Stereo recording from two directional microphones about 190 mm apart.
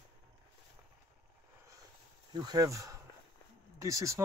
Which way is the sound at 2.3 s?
20° right (ahead or behind).